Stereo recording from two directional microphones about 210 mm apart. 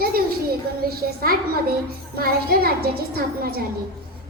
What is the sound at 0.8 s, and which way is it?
A woman's voice, 45° right (ahead or behind).